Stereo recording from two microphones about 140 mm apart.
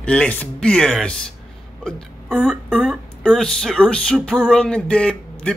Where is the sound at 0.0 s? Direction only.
10° left (ahead or behind).